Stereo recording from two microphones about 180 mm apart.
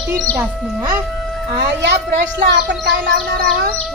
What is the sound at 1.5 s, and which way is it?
Speech, 70° right (ahead or behind).